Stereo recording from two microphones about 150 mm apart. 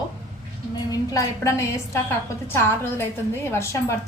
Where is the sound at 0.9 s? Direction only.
20° left (ahead or behind).